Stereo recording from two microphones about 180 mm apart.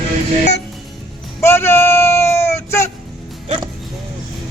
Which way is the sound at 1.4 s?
15° left (ahead or behind).